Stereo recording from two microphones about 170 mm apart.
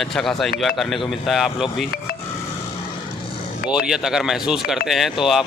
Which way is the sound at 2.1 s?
60° left (ahead or behind).